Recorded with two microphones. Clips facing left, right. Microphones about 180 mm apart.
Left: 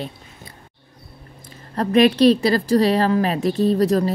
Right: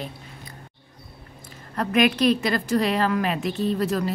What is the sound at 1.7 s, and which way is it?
A woman's voice, 35° left (ahead or behind).